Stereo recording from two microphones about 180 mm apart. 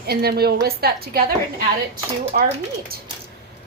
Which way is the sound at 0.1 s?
60° right (ahead or behind).